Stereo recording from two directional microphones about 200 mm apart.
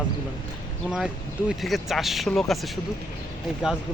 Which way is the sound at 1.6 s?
Centre (ahead or behind).